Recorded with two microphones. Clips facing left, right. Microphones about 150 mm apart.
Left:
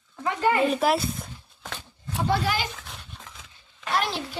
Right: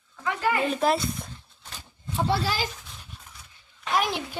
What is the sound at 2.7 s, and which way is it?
Dog, 80° left.